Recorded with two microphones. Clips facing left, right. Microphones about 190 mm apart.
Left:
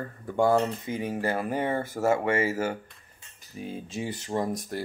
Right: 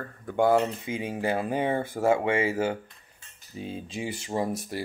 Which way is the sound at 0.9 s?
20° right (ahead or behind).